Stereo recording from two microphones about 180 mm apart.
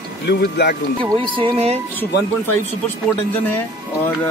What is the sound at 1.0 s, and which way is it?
Speech, 25° right (ahead or behind).